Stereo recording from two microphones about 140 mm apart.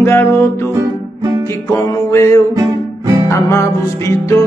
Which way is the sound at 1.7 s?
25° left (ahead or behind).